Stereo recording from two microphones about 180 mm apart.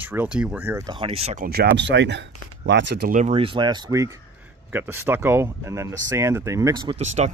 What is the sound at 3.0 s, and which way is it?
Speech, 40° right (ahead or behind).